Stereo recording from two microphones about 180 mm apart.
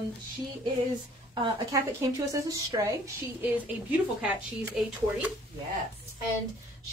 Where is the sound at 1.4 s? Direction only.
20° right (ahead or behind).